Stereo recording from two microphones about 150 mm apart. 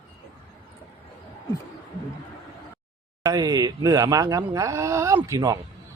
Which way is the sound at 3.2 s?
25° right (ahead or behind).